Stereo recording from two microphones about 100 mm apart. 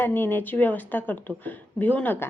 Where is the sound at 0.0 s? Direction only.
20° left (ahead or behind).